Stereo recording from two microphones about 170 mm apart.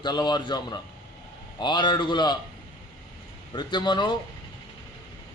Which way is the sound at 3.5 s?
25° left (ahead or behind).